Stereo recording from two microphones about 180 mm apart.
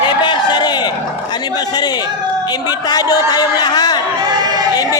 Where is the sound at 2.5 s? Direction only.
20° left (ahead or behind).